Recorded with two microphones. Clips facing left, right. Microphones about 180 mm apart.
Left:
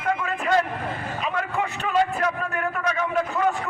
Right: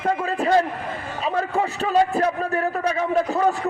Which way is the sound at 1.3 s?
35° right (ahead or behind).